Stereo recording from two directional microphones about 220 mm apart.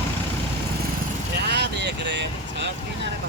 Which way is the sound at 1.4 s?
50° right (ahead or behind).